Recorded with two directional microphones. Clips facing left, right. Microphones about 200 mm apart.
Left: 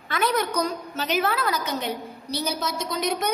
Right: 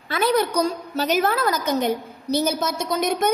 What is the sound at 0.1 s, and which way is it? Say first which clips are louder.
A woman's voice: right 4 dB; 30° right (ahead or behind).